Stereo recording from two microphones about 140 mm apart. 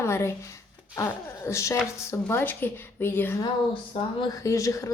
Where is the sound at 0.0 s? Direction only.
20° left (ahead or behind).